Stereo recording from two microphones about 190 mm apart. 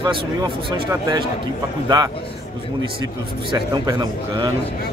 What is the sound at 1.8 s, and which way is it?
Speech, 20° right (ahead or behind).